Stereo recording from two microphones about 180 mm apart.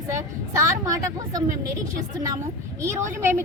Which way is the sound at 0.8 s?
20° right (ahead or behind).